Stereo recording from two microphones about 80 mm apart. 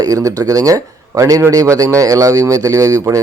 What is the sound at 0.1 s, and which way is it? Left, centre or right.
A man's voice, right.